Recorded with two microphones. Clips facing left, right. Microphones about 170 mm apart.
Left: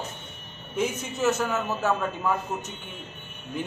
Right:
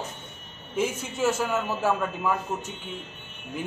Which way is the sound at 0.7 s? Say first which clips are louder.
Even; 5° right (ahead or behind).